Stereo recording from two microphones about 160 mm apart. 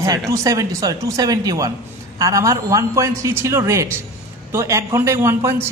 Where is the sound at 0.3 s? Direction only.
20° right (ahead or behind).